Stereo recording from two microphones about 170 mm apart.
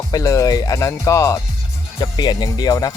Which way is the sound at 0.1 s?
20° left (ahead or behind).